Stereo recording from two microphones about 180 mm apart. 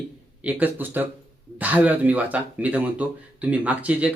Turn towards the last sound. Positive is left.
turn(degrees=-5)  # may be behind; listen again after turning